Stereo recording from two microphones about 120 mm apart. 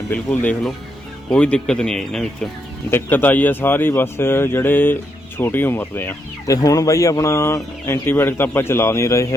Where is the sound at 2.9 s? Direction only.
15° left (ahead or behind).